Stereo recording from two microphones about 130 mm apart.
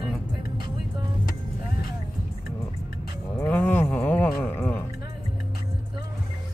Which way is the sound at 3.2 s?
15° left (ahead or behind).